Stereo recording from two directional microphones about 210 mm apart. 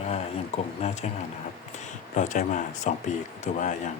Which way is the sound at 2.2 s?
35° left (ahead or behind).